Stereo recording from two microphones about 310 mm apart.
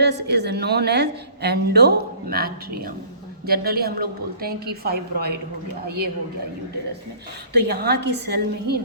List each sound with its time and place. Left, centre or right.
0.0 s a woman's voice: right
7.5 s a woman's voice: right